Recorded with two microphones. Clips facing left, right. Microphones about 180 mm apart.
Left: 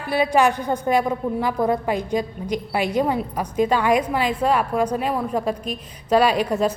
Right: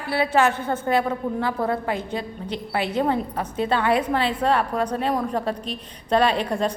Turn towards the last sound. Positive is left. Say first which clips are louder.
# left 2 dB
turn(degrees=10)  # may be behind; listen again after turning